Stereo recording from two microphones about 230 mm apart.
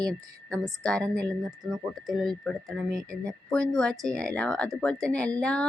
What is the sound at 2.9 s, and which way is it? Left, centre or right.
Speech, centre.